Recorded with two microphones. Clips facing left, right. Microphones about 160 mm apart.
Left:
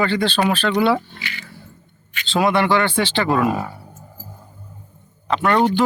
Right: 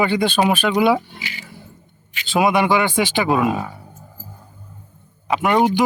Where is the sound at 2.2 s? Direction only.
10° right (ahead or behind).